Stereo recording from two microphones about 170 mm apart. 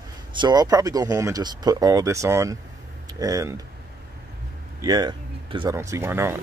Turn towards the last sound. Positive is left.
turn(degrees=-15)  # may be behind; listen again after turning